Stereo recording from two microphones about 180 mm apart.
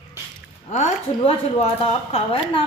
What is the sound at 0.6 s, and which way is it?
A woman's voice, 40° left (ahead or behind).